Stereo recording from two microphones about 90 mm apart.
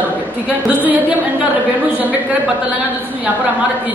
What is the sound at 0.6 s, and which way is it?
Speech, 15° right (ahead or behind).